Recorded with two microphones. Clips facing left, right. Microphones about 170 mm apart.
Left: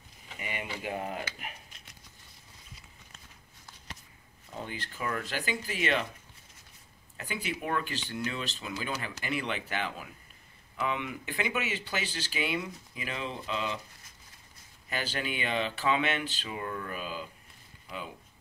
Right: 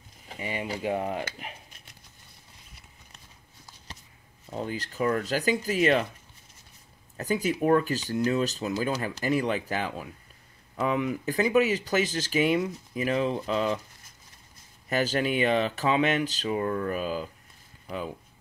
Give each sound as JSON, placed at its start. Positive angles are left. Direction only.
{"t": 0.3, "sound": "speech", "side_deg": -30}
{"t": 4.5, "sound": "speech", "side_deg": -35}
{"t": 7.2, "sound": "speech", "side_deg": -40}
{"t": 14.9, "sound": "speech", "side_deg": -40}